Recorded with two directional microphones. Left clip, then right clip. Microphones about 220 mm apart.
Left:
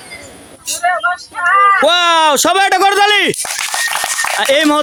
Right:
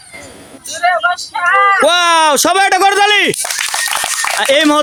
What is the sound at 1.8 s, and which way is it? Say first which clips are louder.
Speech: even; centre (ahead or behind).